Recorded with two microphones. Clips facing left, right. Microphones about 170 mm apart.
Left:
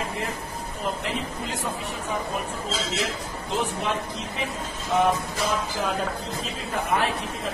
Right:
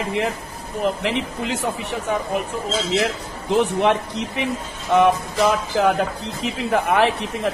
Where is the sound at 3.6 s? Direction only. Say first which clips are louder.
Right 9 dB; 70° right (ahead or behind).